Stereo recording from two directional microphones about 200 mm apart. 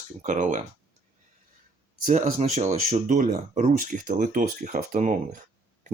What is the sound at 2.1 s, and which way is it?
Speech, 40° right (ahead or behind).